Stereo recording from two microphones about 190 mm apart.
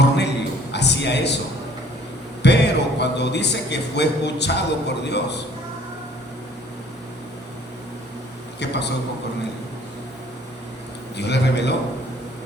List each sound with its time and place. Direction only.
0.0 s a sound: 65° left (ahead or behind)
2.4 s a man's voice: 65° left (ahead or behind)
8.5 s a man's voice: 65° left (ahead or behind)
11.2 s a man's voice: 65° left (ahead or behind)